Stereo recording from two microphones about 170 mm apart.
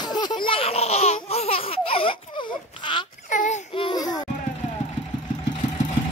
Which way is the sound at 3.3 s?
50° left (ahead or behind).